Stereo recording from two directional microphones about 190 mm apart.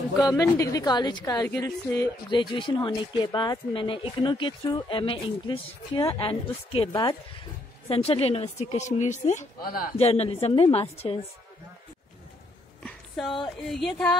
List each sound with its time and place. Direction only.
0.4 s a woman's voice: 20° left (ahead or behind); by 9.8 s 45° left (ahead or behind)
9.9 s a woman's voice: 35° left (ahead or behind)
12.8 s a sound: centre (ahead or behind)
13.7 s speech: centre (ahead or behind)